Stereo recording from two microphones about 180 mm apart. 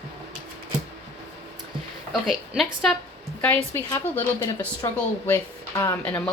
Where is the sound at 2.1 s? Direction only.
Centre (ahead or behind).